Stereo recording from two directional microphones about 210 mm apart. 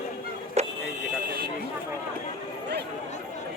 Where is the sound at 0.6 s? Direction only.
30° right (ahead or behind).